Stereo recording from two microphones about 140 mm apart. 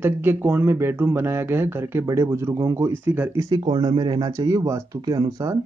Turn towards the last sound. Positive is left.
turn(degrees=-25)  # may be behind; listen again after turning